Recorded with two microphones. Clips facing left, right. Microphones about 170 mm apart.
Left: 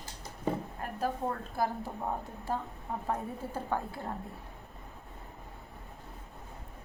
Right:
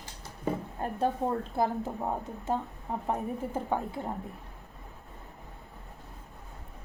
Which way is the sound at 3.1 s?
20° right (ahead or behind).